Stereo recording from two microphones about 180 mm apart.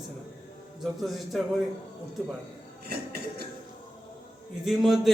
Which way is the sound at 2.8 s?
60° right (ahead or behind).